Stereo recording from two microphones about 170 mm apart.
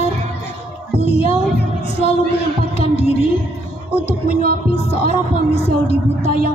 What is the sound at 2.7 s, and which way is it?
Music, 40° left (ahead or behind).